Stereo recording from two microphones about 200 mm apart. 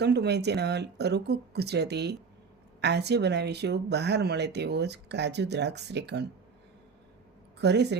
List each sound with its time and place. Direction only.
0.0 s speech: 55° right (ahead or behind)
7.6 s speech: 55° right (ahead or behind)